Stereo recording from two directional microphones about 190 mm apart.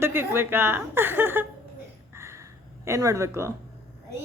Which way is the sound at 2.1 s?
15° right (ahead or behind).